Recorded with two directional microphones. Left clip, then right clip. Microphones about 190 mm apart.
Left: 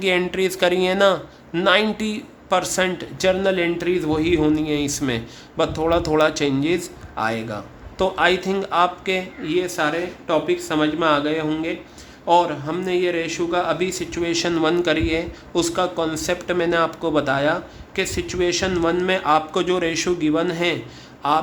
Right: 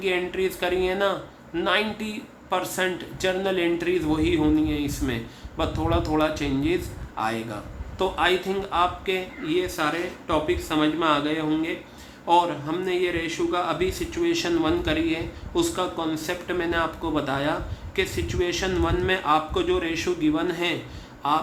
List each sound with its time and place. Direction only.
0.0 s speech: 50° left (ahead or behind)